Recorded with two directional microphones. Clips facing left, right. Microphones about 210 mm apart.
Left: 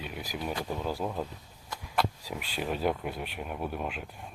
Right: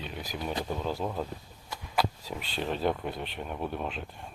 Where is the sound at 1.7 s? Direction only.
Centre (ahead or behind).